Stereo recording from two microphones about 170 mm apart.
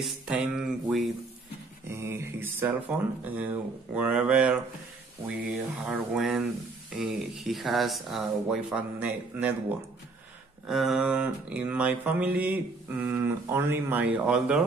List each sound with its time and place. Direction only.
0.0 s speech: centre (ahead or behind)
1.9 s mantra: 15° right (ahead or behind)
5.9 s speech: centre (ahead or behind)
10.7 s mantra: centre (ahead or behind)